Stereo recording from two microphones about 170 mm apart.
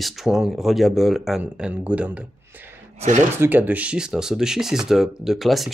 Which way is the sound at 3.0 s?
45° right (ahead or behind).